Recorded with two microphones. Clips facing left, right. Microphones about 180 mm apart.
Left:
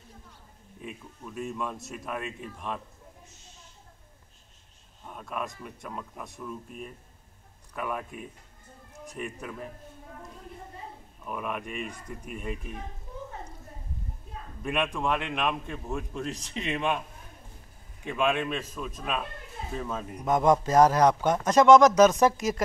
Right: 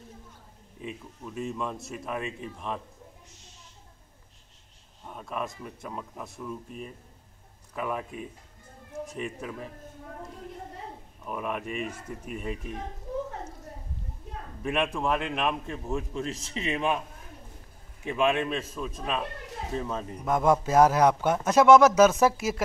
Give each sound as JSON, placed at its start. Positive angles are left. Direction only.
{"t": 1.3, "sound": "a man's voice", "side_deg": 0}
{"t": 5.1, "sound": "a man's voice", "side_deg": 0}
{"t": 11.2, "sound": "a man's voice", "side_deg": 0}
{"t": 14.3, "sound": "a sound", "side_deg": -75}
{"t": 14.6, "sound": "a man's voice", "side_deg": 0}
{"t": 18.0, "sound": "a man's voice", "side_deg": 0}